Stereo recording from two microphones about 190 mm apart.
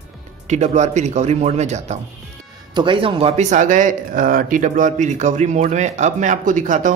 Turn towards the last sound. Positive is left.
turn(degrees=-40)  # may be behind; listen again after turning